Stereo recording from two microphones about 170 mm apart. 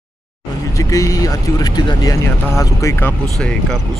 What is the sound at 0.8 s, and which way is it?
Speech, 20° left (ahead or behind).